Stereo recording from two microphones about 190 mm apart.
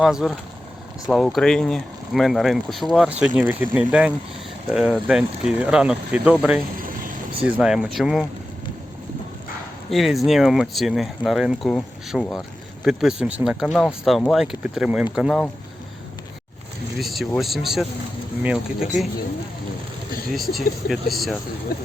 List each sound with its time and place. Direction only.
0.0 s speech: 5° right (ahead or behind)
6.7 s vehicle: 45° right (ahead or behind)
7.4 s speech: 5° right (ahead or behind)
9.9 s speech: centre (ahead or behind)
17.0 s speech: centre (ahead or behind)
20.3 s speech: centre (ahead or behind)